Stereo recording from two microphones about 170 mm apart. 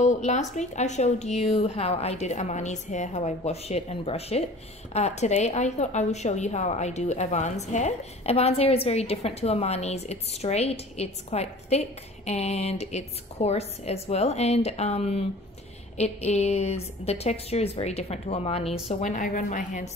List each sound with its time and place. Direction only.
0.0 s a woman's voice: 45° left (ahead or behind)
16.3 s a woman's voice: 40° left (ahead or behind)